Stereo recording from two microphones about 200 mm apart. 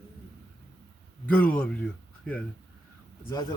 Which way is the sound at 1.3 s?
5° left (ahead or behind).